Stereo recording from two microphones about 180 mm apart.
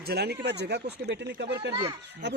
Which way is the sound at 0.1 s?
65° right (ahead or behind).